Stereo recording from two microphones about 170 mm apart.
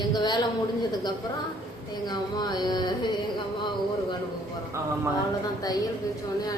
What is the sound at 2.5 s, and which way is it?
Carnatic music, 25° left (ahead or behind).